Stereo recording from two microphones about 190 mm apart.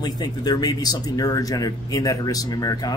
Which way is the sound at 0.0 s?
20° left (ahead or behind).